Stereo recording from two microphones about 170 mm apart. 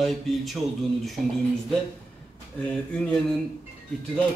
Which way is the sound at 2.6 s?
5° left (ahead or behind).